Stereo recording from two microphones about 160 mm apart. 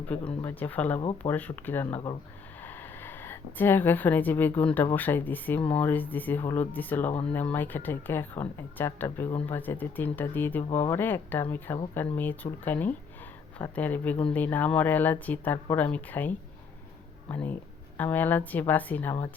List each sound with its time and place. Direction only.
0.4 s speech: 10° left (ahead or behind)
7.1 s speech: 35° left (ahead or behind)
7.3 s speech: 10° left (ahead or behind)